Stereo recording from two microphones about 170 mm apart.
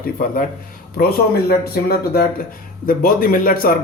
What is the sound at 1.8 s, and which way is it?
Speech, 65° left (ahead or behind).